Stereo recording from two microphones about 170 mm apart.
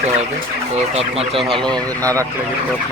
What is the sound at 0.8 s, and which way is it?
Speech, 35° right (ahead or behind).